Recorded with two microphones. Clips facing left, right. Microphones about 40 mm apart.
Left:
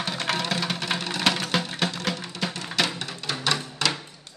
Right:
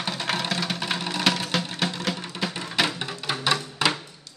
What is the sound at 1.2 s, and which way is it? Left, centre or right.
Music, centre.